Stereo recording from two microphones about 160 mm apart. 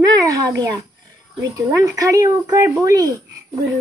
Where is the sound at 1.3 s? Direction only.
20° right (ahead or behind).